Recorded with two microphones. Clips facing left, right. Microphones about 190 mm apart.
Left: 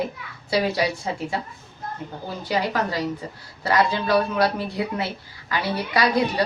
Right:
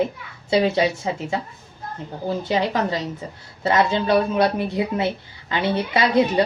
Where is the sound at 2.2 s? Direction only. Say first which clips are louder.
Right 4 dB; 20° right (ahead or behind).